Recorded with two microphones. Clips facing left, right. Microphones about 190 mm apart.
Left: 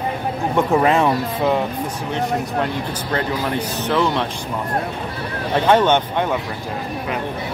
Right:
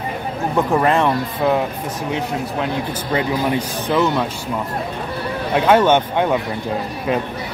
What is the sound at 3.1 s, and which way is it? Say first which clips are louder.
Speech: right 3 dB; 10° right (ahead or behind).